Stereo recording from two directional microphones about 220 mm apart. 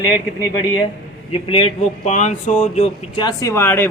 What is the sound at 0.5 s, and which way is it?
Speech, 20° left (ahead or behind).